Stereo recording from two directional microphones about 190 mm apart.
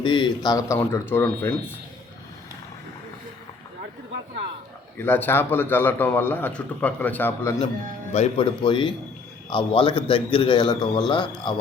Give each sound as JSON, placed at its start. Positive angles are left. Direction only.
{"t": 0.0, "sound": "a man's voice", "side_deg": 25}
{"t": 4.9, "sound": "a man's voice", "side_deg": 10}
{"t": 8.1, "sound": "a man's voice", "side_deg": 35}